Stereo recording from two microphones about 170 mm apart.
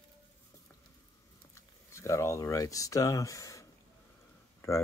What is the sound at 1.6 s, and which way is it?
Speech, 15° left (ahead or behind).